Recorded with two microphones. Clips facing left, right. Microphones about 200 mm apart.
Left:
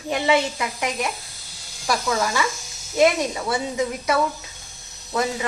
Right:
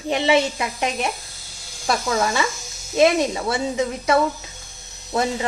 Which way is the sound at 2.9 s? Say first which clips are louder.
Right 2 dB; 25° right (ahead or behind).